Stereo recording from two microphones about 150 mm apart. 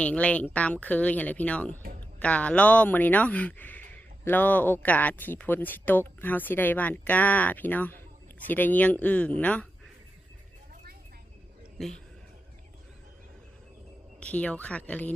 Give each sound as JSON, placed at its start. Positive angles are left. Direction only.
{"t": 0.0, "sound": "speech", "side_deg": 10}
{"t": 11.8, "sound": "speech", "side_deg": 0}
{"t": 14.2, "sound": "speech", "side_deg": 10}